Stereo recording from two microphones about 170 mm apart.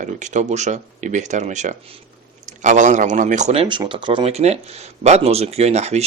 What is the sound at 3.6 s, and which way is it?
Speech, 25° right (ahead or behind).